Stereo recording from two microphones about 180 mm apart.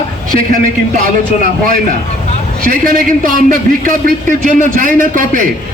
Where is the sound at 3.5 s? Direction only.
50° right (ahead or behind).